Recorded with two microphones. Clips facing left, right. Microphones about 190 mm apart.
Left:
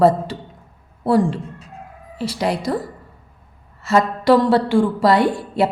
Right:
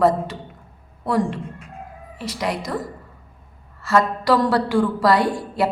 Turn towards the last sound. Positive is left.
turn(degrees=25)  # may be behind; listen again after turning